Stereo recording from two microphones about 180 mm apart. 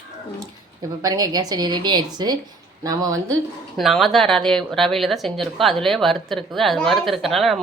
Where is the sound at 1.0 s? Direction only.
20° right (ahead or behind).